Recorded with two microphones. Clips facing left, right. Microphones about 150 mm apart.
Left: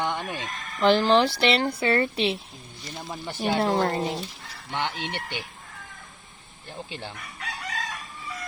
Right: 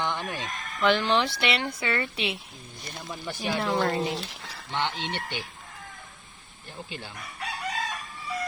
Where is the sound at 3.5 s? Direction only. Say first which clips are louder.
Left 2 dB; 35° left (ahead or behind).